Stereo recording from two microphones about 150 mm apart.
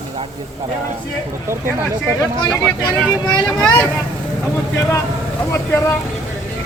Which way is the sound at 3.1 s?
30° left (ahead or behind).